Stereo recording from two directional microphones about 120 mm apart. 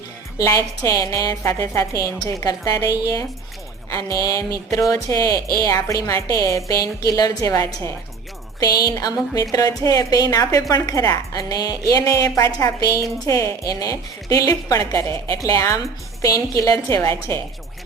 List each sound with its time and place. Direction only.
0.3 s a woman's voice: 25° left (ahead or behind)